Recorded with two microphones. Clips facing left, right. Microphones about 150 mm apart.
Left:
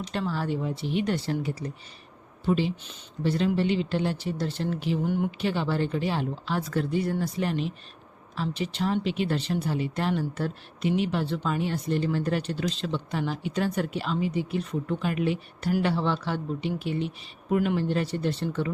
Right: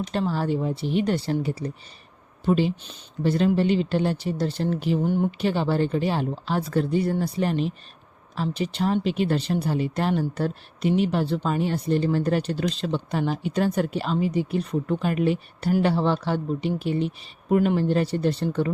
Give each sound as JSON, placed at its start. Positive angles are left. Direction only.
{"t": 0.1, "sound": "speech", "side_deg": -35}
{"t": 2.5, "sound": "speech", "side_deg": -45}